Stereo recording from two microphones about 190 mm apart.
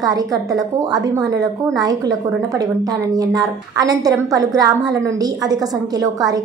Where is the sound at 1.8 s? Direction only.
20° right (ahead or behind).